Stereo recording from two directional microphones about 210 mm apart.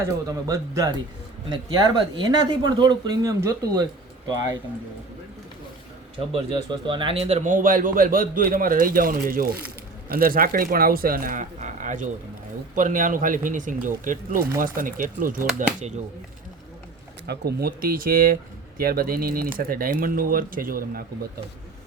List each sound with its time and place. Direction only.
0.4 s speech: 15° right (ahead or behind)
6.1 s speech: 25° right (ahead or behind)
17.2 s speech: 45° right (ahead or behind)